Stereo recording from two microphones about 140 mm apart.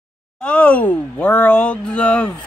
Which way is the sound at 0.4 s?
10° left (ahead or behind).